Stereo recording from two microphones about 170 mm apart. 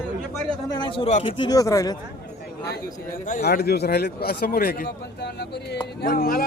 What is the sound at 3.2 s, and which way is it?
Speech, 60° left (ahead or behind).